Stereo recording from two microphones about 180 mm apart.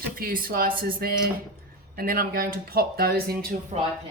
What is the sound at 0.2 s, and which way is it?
Speech, 55° right (ahead or behind).